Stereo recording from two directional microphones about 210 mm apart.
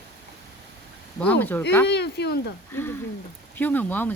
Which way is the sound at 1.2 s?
10° left (ahead or behind).